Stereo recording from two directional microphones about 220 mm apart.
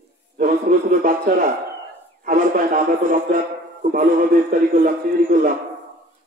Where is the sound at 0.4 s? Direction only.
35° right (ahead or behind).